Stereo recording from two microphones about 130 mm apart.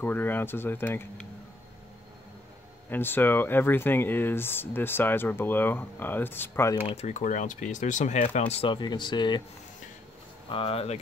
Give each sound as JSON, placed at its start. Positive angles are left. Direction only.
{"t": 0.0, "sound": "speech", "side_deg": 15}
{"t": 2.9, "sound": "speech", "side_deg": 15}
{"t": 6.9, "sound": "speech", "side_deg": 60}
{"t": 8.7, "sound": "speech", "side_deg": 35}
{"t": 10.5, "sound": "speech", "side_deg": 45}